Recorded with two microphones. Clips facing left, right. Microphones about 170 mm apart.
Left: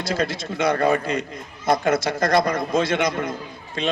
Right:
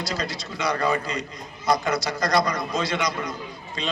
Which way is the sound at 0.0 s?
55° left (ahead or behind).